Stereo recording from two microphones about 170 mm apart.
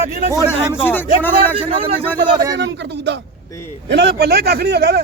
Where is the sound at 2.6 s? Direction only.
90° right; by 5.0 s 70° right (ahead or behind).